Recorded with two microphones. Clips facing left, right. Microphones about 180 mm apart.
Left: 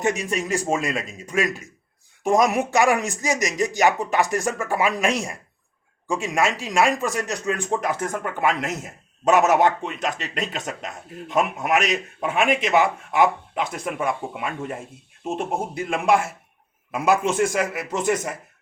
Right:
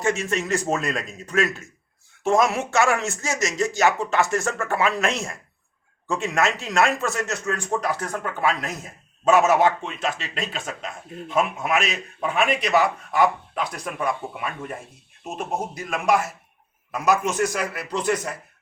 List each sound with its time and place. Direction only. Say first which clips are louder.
0.0 s speech: even; 15° left (ahead or behind)